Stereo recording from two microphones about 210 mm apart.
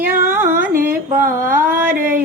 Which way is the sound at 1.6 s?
10° right (ahead or behind).